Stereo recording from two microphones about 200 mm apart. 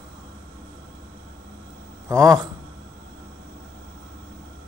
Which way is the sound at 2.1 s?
15° right (ahead or behind).